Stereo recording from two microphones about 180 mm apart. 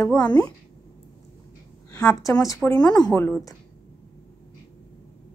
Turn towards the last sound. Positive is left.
turn(degrees=10)  # may be behind; listen again after turning